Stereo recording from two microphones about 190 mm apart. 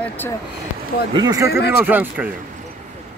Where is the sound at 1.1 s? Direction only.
20° right (ahead or behind).